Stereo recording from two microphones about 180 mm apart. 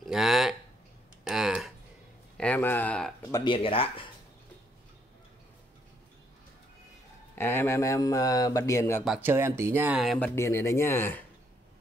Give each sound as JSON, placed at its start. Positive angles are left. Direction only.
{"t": 0.0, "sound": "a sound", "side_deg": 0}
{"t": 2.3, "sound": "speech", "side_deg": 5}
{"t": 3.3, "sound": "speech", "side_deg": 20}
{"t": 3.5, "sound": "speech", "side_deg": 30}
{"t": 7.3, "sound": "speech", "side_deg": 15}
{"t": 9.0, "sound": "speech", "side_deg": -10}
{"t": 10.1, "sound": "speech", "side_deg": 10}